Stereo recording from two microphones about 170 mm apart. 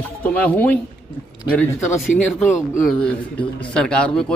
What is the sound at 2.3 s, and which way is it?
A man's voice, 5° left (ahead or behind).